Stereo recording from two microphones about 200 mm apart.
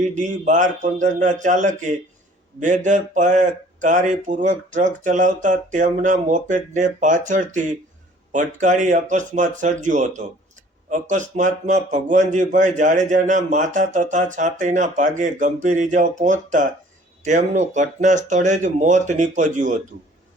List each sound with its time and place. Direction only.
0.0 s a man's voice: 35° right (ahead or behind)